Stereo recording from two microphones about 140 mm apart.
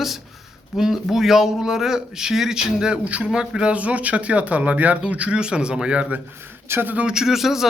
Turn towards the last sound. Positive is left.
turn(degrees=-5)  # may be behind; listen again after turning